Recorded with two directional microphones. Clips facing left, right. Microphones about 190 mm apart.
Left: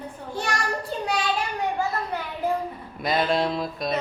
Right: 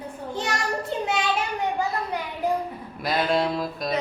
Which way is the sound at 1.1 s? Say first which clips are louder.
Left 1 dB; 20° right (ahead or behind).